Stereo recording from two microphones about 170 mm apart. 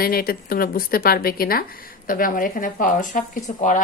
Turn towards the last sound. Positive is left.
turn(degrees=50)  # may be behind; listen again after turning